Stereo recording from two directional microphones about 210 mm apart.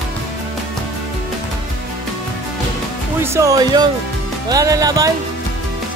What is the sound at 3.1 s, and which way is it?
Speech, 10° right (ahead or behind).